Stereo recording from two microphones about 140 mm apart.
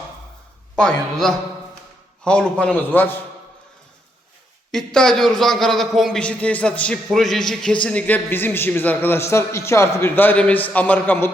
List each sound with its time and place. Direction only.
0.8 s a man's voice: 5° left (ahead or behind)
4.7 s a man's voice: 5° left (ahead or behind)